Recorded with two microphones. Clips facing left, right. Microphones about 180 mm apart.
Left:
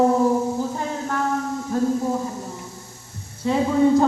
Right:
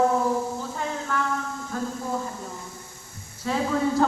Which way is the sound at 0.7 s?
40° left (ahead or behind).